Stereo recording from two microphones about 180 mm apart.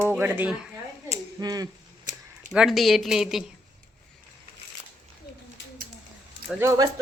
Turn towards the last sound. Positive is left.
turn(degrees=-15)  # may be behind; listen again after turning